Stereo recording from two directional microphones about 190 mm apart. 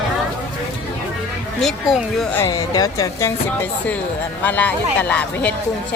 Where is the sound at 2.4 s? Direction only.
20° left (ahead or behind).